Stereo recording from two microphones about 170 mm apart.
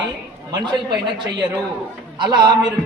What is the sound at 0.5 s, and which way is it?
Speech, 25° right (ahead or behind).